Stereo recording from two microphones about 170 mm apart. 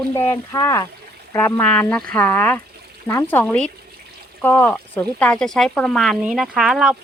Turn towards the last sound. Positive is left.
turn(degrees=0)  # may be behind; listen again after turning